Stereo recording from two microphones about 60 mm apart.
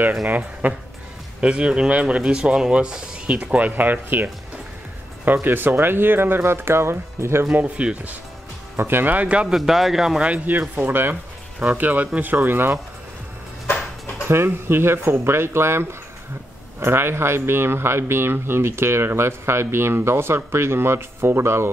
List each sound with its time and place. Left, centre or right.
0.3 s speech: right
1.4 s speech: centre; by 7.4 s right
7.5 s speech: right
8.7 s speech: right
9.5 s speech: centre
10.2 s speech: right
14.2 s speech: right